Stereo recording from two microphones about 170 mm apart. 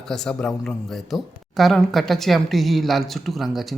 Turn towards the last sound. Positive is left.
turn(degrees=0)  # may be behind; listen again after turning